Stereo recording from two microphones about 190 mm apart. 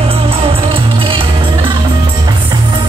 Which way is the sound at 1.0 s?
25° right (ahead or behind).